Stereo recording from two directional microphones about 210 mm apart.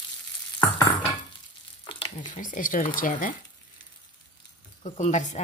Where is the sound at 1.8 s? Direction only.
25° left (ahead or behind).